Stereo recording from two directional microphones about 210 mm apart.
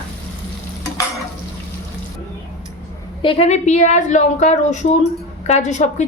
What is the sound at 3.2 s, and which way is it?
Speech, 30° left (ahead or behind).